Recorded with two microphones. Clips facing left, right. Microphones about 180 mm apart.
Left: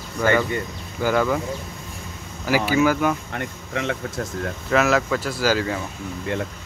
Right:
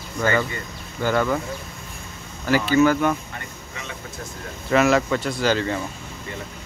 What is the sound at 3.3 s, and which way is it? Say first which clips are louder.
Speech: left 9 dB; 75° left (ahead or behind).